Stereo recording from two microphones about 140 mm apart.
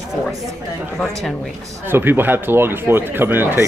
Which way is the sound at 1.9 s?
15° right (ahead or behind).